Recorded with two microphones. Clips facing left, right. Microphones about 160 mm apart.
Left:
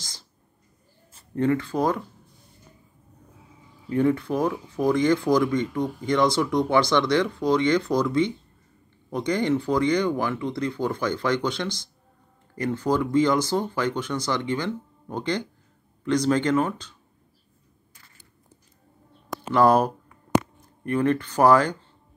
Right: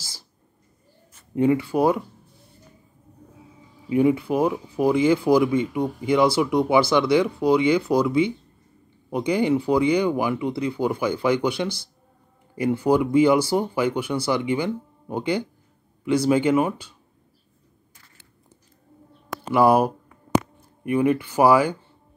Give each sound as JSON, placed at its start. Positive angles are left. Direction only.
{"t": 1.3, "sound": "speech", "side_deg": -10}
{"t": 3.9, "sound": "speech", "side_deg": -10}
{"t": 19.5, "sound": "speech", "side_deg": -10}